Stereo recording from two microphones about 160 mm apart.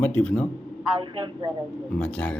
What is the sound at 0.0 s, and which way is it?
Speech, 10° left (ahead or behind).